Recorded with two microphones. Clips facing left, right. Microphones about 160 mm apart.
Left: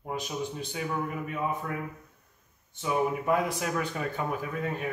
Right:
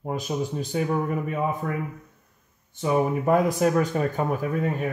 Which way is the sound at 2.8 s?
40° right (ahead or behind).